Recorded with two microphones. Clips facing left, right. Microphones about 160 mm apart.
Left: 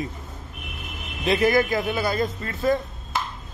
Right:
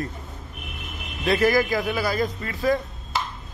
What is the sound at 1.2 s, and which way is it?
Speech, 20° left (ahead or behind).